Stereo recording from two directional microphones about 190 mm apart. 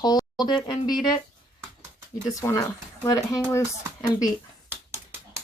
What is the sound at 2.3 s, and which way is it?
Speech, 15° left (ahead or behind).